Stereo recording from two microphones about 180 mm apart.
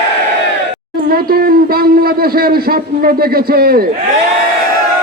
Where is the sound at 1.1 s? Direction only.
55° right (ahead or behind).